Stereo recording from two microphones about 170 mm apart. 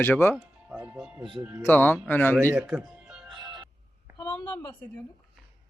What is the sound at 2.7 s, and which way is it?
Music, 5° right (ahead or behind).